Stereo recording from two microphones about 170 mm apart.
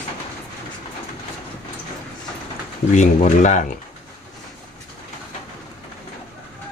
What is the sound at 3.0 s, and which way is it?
Speech, 45° left (ahead or behind).